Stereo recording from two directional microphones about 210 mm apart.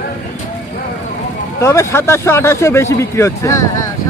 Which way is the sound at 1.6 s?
15° left (ahead or behind).